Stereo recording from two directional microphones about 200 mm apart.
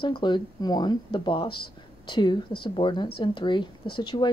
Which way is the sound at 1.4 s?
50° left (ahead or behind).